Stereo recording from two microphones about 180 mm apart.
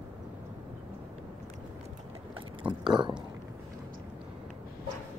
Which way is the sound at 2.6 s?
5° right (ahead or behind).